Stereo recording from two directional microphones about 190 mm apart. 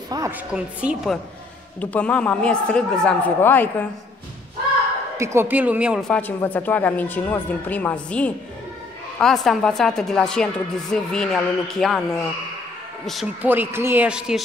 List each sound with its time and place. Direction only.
0.1 s speech: 15° right (ahead or behind)
0.5 s a woman's voice: 5° right (ahead or behind)
1.8 s speech: 5° left (ahead or behind)
5.1 s speech: 15° right (ahead or behind)
6.0 s a woman's voice: 10° left (ahead or behind)
13.0 s speech: centre (ahead or behind)